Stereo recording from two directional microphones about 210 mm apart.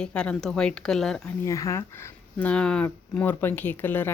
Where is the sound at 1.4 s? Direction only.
15° left (ahead or behind).